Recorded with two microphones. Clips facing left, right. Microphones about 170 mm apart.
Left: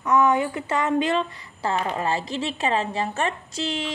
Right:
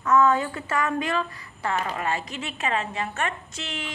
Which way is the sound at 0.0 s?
15° left (ahead or behind).